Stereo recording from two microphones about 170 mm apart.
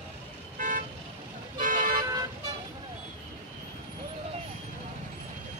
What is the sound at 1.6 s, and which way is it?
Toot, 50° right (ahead or behind).